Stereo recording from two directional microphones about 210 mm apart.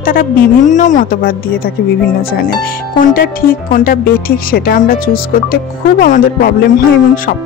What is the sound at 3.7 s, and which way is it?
Speech, 45° left (ahead or behind).